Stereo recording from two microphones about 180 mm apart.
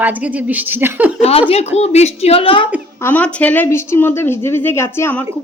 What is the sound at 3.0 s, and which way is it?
Speech, 10° left (ahead or behind).